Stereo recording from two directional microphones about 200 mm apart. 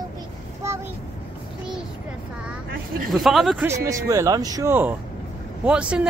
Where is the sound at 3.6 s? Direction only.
15° right (ahead or behind).